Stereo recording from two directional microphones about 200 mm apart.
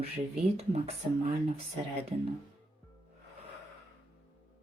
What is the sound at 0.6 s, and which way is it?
Speech, 30° right (ahead or behind).